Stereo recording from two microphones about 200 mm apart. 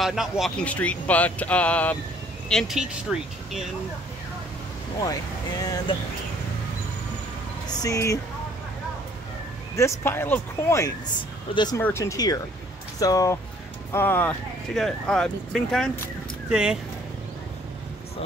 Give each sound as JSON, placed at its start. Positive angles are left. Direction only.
{"t": 0.0, "sound": "speech", "side_deg": 0}
{"t": 5.6, "sound": "speech", "side_deg": 20}
{"t": 7.6, "sound": "speech", "side_deg": 15}
{"t": 9.8, "sound": "speech", "side_deg": 15}